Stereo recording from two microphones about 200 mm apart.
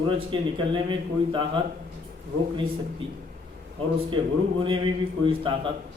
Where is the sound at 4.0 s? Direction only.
25° right (ahead or behind).